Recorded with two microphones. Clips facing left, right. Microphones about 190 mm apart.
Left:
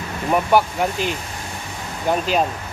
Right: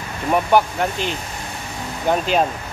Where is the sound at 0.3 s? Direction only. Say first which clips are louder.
Right 1 dB; 5° left (ahead or behind).